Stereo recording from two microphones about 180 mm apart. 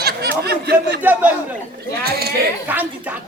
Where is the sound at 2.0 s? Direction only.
60° right (ahead or behind).